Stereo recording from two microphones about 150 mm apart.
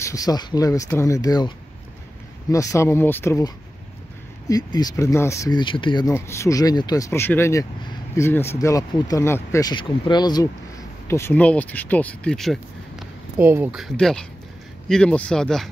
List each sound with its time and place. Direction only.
0.0 s speech: 25° left (ahead or behind)
2.5 s speech: 20° left (ahead or behind)
6.1 s speech: 20° left (ahead or behind)
11.1 s speech: 15° left (ahead or behind)
13.4 s speech: 15° right (ahead or behind)
13.7 s speech: centre (ahead or behind)